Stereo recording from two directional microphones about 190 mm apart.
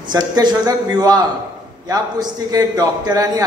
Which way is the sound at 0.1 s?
20° right (ahead or behind).